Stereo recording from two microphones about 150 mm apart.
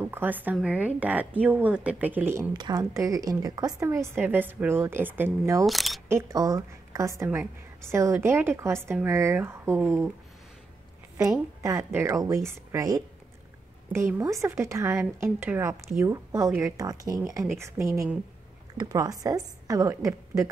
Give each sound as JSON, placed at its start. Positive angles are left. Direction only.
{"t": 0.0, "sound": "a woman's voice", "side_deg": -10}
{"t": 2.5, "sound": "a woman's voice", "side_deg": -25}
{"t": 5.7, "sound": "speech", "side_deg": 0}
{"t": 6.0, "sound": "a woman's voice", "side_deg": -20}
{"t": 11.6, "sound": "a woman's voice", "side_deg": -20}